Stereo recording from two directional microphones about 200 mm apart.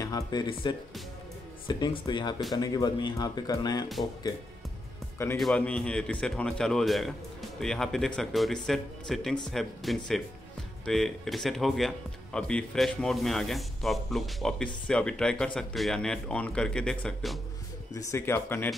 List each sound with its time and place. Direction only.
0.0 s speech: 20° left (ahead or behind)
5.4 s speech: 5° left (ahead or behind)